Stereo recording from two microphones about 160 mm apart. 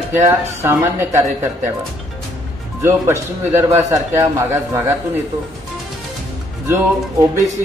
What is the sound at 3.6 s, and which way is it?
A man's voice, 15° right (ahead or behind).